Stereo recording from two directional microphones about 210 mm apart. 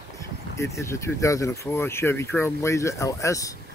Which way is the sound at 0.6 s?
15° left (ahead or behind).